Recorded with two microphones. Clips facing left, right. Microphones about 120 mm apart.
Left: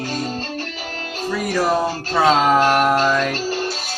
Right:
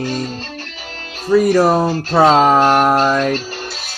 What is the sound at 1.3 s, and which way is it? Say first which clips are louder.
Music: right 8 dB; 50° right (ahead or behind).